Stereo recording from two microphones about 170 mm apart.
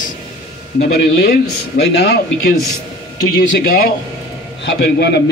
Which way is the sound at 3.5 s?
65° left (ahead or behind).